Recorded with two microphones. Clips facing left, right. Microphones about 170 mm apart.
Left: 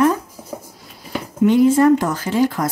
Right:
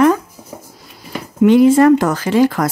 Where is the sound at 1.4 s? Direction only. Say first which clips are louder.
Right 4 dB; 80° right.